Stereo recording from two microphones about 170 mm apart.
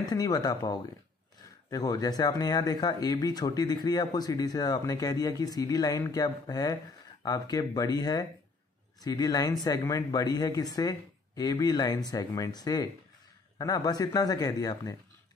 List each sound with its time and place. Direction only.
0.1 s speech: 25° left (ahead or behind)